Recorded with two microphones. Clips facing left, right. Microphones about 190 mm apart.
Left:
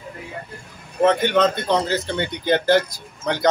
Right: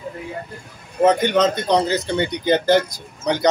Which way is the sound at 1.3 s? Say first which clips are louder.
Right 1 dB; 15° right (ahead or behind).